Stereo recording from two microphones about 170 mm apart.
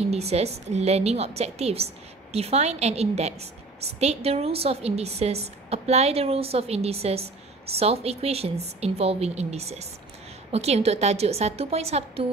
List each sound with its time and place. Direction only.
0.1 s a woman's voice: 40° right (ahead or behind)